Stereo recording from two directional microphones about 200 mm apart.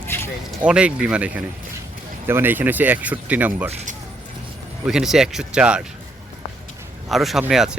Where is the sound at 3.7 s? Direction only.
30° right (ahead or behind).